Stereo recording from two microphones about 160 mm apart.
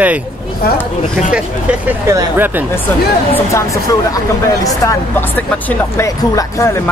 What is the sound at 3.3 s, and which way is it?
Speech, 20° left (ahead or behind).